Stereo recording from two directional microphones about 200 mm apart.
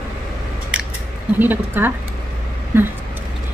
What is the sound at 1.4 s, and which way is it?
A woman's voice, 10° right (ahead or behind).